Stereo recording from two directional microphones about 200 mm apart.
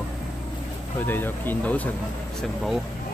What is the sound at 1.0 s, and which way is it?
Speech, 10° left (ahead or behind).